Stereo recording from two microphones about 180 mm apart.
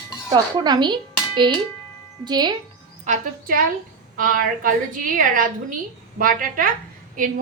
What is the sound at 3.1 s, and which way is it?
A woman's voice, 50° right (ahead or behind).